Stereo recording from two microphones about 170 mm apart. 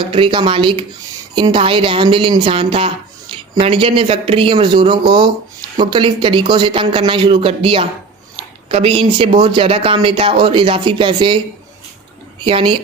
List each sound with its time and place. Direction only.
0.1 s a woman's voice: 30° right (ahead or behind)
12.5 s speech: 30° right (ahead or behind)